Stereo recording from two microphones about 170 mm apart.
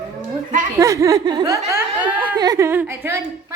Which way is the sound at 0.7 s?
20° right (ahead or behind).